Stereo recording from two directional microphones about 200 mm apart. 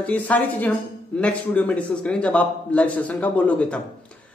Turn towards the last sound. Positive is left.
turn(degrees=5)  # may be behind; listen again after turning